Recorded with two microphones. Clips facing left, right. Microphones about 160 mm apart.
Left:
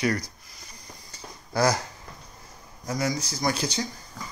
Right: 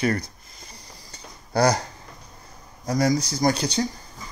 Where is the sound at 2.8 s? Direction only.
35° right (ahead or behind).